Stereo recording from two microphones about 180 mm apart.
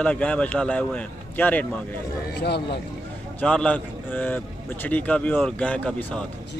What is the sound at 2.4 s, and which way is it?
Speech, 65° left (ahead or behind).